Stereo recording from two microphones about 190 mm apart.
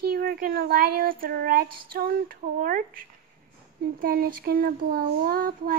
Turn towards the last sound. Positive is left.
turn(degrees=-50)  # may be behind; listen again after turning